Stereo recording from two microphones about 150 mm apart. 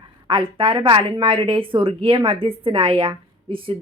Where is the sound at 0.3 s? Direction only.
35° right (ahead or behind).